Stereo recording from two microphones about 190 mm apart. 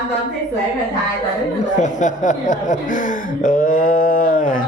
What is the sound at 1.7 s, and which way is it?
Speech, 40° left (ahead or behind).